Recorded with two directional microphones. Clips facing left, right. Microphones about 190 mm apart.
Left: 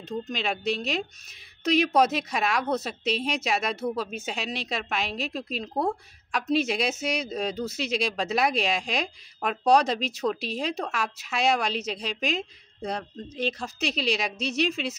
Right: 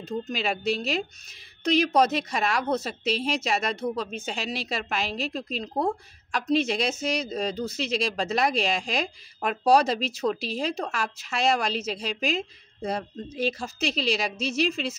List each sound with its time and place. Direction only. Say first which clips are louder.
0.0 s speech: right 1 dB; 5° right (ahead or behind)